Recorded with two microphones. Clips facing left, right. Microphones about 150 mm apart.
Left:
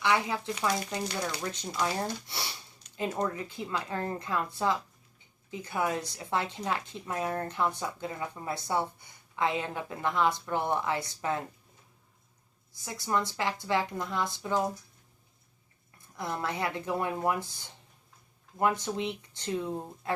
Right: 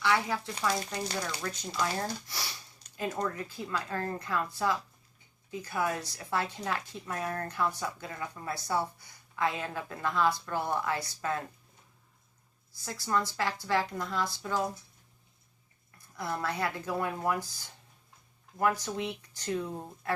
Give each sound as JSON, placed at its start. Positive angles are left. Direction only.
{"t": 0.0, "sound": "a woman's voice", "side_deg": 20}
{"t": 12.7, "sound": "a woman's voice", "side_deg": 20}
{"t": 16.1, "sound": "a woman's voice", "side_deg": 20}